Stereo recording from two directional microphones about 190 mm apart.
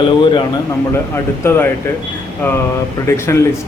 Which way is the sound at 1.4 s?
10° left (ahead or behind).